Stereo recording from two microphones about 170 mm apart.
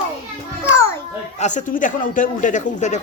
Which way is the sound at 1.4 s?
45° left (ahead or behind).